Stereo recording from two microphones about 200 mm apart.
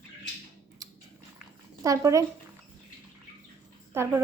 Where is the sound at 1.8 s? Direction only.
15° right (ahead or behind).